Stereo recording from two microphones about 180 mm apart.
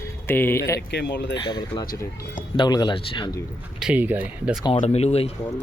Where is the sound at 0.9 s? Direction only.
70° left (ahead or behind).